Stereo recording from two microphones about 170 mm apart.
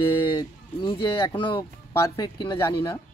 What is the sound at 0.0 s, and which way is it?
Speech, 30° left (ahead or behind).